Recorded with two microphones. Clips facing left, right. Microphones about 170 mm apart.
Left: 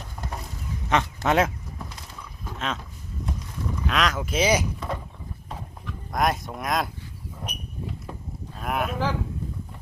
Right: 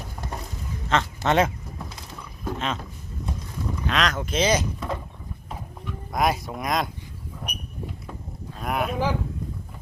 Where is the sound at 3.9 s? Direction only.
5° left (ahead or behind).